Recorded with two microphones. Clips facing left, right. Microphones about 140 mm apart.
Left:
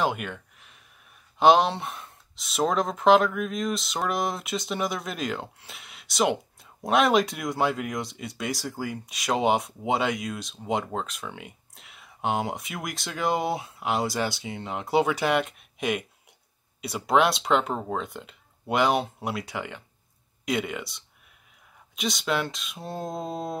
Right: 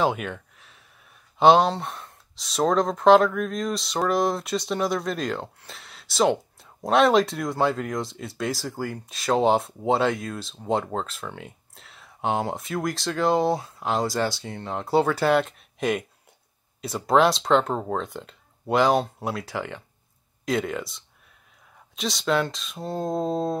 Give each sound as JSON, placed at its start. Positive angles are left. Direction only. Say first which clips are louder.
{"t": 0.0, "sound": "speech", "louder": "right 3 dB", "side_deg": 5}
{"t": 1.4, "sound": "speech", "louder": "right 2 dB", "side_deg": 0}
{"t": 23.2, "sound": "a sound", "louder": "right 7 dB", "side_deg": -25}